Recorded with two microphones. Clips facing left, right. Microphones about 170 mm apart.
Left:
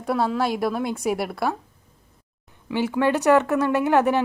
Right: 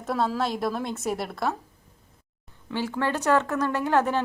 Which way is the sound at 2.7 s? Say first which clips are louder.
Left 6 dB; 15° left (ahead or behind).